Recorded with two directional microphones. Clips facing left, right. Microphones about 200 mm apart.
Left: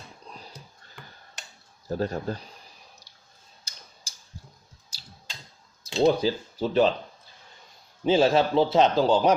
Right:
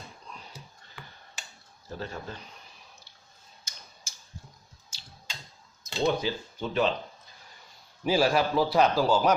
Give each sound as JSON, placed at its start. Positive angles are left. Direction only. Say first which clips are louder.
{"t": 0.5, "sound": "tick-tock", "louder": "even", "side_deg": -5}
{"t": 1.9, "sound": "speech", "louder": "left 9 dB", "side_deg": 40}
{"t": 3.1, "sound": "a sound", "louder": "even", "side_deg": 40}
{"t": 3.6, "sound": "tick-tock", "louder": "even", "side_deg": 35}
{"t": 4.9, "sound": "a sound", "louder": "left 1 dB", "side_deg": 35}
{"t": 6.0, "sound": "speech", "louder": "left 6 dB", "side_deg": 40}
{"t": 8.0, "sound": "a man's voice", "louder": "left 4 dB", "side_deg": 25}